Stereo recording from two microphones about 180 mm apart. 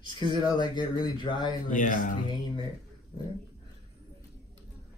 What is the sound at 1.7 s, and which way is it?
Speech, 45° left (ahead or behind).